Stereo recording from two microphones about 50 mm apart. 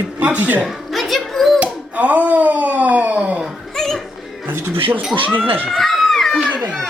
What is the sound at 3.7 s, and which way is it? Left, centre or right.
Music, centre.